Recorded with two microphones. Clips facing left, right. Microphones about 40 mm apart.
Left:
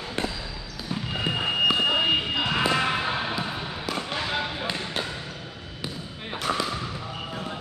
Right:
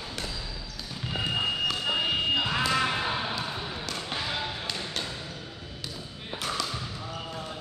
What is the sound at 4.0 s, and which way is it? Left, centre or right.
Basketball bounce, left.